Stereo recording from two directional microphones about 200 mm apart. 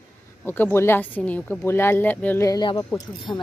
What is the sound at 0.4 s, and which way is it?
A woman's voice, 10° left (ahead or behind).